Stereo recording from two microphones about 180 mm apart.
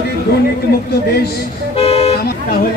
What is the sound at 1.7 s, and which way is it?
Vehicle, 35° left (ahead or behind).